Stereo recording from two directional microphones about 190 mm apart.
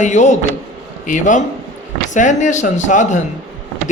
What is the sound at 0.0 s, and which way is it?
Speech, 40° left (ahead or behind).